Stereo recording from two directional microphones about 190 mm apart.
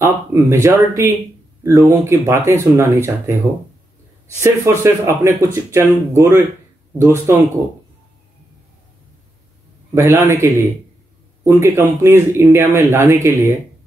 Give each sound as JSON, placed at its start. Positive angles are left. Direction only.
{"t": 0.0, "sound": "speech", "side_deg": -15}
{"t": 4.4, "sound": "speech", "side_deg": -15}
{"t": 9.9, "sound": "speech", "side_deg": -15}